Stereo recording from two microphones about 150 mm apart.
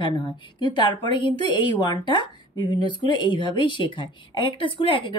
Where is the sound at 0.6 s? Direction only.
30° left (ahead or behind).